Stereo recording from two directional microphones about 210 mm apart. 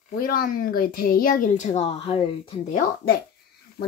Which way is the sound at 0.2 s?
45° left (ahead or behind).